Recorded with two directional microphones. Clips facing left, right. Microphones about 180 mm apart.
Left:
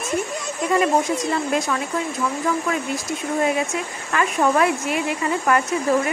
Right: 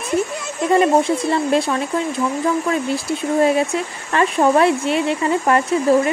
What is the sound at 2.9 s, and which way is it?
Speech, 30° right (ahead or behind).